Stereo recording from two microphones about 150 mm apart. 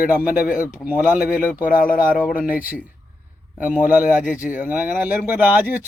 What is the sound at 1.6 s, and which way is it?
Speech, 65° left (ahead or behind).